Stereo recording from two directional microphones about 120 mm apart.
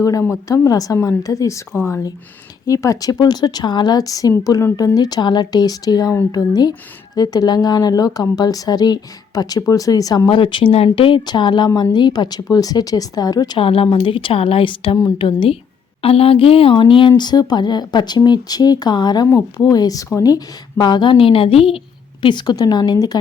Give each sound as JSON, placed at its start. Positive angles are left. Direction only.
{"t": 0.0, "sound": "speech", "side_deg": 25}
{"t": 10.2, "sound": "speech", "side_deg": 45}
{"t": 13.6, "sound": "speech", "side_deg": 50}
{"t": 16.0, "sound": "speech", "side_deg": 55}
{"t": 22.2, "sound": "speech", "side_deg": 40}